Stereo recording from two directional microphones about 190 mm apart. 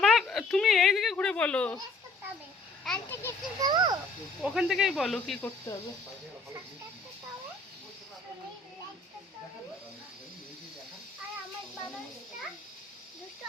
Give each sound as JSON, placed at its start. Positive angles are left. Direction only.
{"t": 0.0, "sound": "giggle", "side_deg": 0}
{"t": 2.8, "sound": "a child's voice", "side_deg": 10}
{"t": 3.6, "sound": "a child's voice", "side_deg": -20}
{"t": 4.4, "sound": "speech", "side_deg": 0}
{"t": 5.7, "sound": "speech", "side_deg": 15}